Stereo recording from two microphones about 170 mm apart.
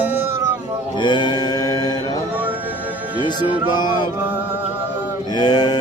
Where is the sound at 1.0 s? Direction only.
25° left (ahead or behind).